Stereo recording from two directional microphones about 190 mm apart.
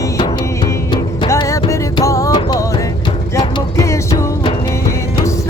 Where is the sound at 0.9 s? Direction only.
25° left (ahead or behind).